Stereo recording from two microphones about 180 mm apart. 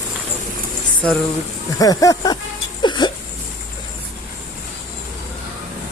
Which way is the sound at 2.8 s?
25° left (ahead or behind).